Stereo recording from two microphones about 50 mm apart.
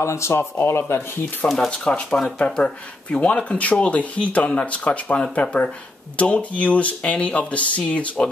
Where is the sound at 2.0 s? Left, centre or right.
Centre.